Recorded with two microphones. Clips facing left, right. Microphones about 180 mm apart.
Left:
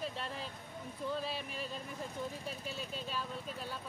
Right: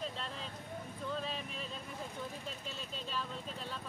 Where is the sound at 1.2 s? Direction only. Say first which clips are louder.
Left 1 dB; 5° left (ahead or behind).